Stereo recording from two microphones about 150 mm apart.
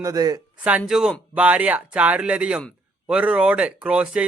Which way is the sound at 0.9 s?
5° right (ahead or behind).